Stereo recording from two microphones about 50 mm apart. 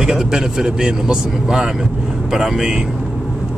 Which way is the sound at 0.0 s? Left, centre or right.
Centre.